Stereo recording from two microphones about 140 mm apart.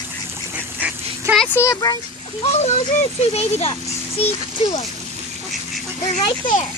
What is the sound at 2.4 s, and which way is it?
Speech, 50° left (ahead or behind).